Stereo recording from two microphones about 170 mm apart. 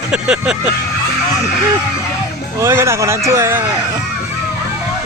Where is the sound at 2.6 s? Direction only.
15° right (ahead or behind).